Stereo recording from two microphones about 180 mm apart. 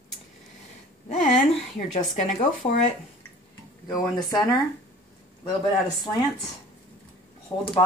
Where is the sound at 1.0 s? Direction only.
50° left (ahead or behind).